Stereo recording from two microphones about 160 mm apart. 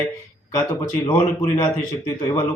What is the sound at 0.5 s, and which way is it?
A man's voice, 20° left (ahead or behind).